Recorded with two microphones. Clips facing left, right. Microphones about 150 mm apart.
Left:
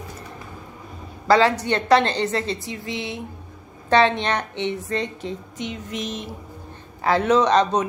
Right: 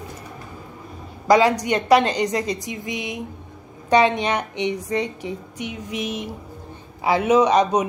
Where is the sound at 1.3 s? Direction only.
15° right (ahead or behind).